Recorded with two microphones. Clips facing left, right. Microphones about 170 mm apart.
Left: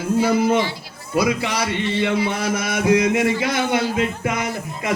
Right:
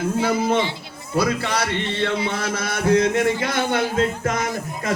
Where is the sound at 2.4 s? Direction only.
10° left (ahead or behind).